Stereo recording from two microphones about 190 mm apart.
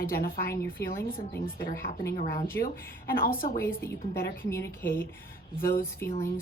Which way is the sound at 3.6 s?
10° left (ahead or behind).